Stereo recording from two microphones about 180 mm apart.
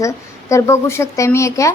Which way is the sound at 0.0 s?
15° left (ahead or behind).